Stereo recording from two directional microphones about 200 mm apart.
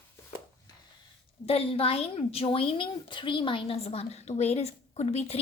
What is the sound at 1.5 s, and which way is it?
A woman's voice, 30° left (ahead or behind).